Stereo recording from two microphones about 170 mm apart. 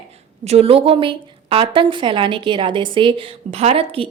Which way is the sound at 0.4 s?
35° right (ahead or behind).